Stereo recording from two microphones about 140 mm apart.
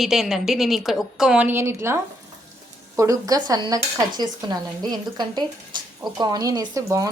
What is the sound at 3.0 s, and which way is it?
Speech, 25° right (ahead or behind).